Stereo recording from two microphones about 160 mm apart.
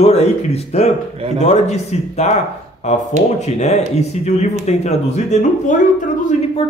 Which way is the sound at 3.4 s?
45° left (ahead or behind).